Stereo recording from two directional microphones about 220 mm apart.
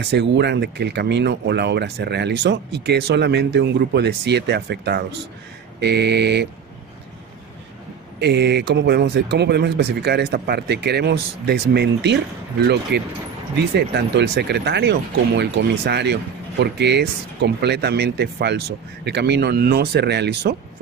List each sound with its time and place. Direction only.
0.0 s speech: 50° right (ahead or behind)
8.2 s speech: 50° right (ahead or behind)